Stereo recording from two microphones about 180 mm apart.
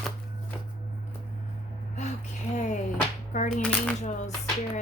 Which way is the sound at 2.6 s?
40° left (ahead or behind).